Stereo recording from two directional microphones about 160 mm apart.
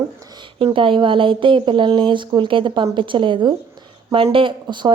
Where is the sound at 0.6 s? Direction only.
35° right (ahead or behind).